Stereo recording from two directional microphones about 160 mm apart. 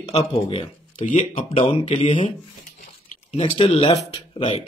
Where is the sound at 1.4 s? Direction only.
35° left (ahead or behind).